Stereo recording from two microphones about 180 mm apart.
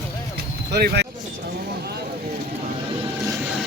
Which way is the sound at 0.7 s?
65° right (ahead or behind).